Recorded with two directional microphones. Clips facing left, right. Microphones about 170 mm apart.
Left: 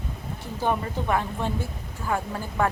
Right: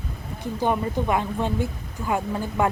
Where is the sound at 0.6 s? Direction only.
15° right (ahead or behind).